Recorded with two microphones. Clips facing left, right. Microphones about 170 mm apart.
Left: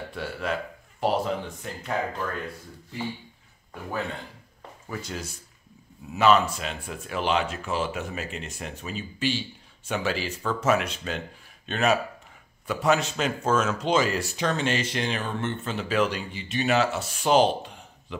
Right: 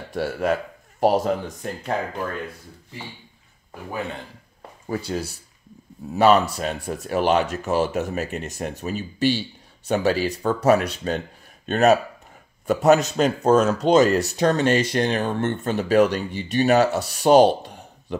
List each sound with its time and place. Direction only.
0.1 s speech: 45° right (ahead or behind)
4.8 s speech: 35° right (ahead or behind); by 15.4 s 55° right (ahead or behind)
15.6 s speech: 45° right (ahead or behind)